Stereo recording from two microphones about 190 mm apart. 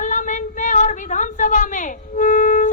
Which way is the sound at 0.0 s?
40° left (ahead or behind).